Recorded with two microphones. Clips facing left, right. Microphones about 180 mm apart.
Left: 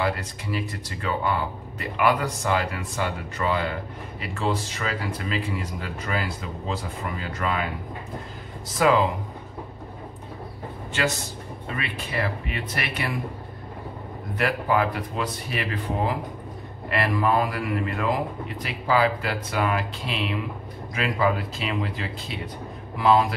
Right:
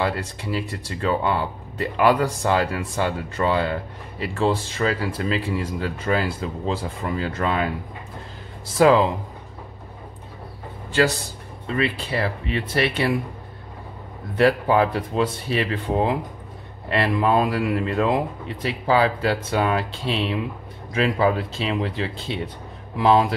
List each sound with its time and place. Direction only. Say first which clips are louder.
0.0 s speech: right 2 dB; 30° right (ahead or behind)
8.7 s speech: right 5 dB; 30° right (ahead or behind)
10.9 s speech: right 6 dB; 35° right (ahead or behind)
14.3 s a man's voice: right 6 dB; 30° right (ahead or behind)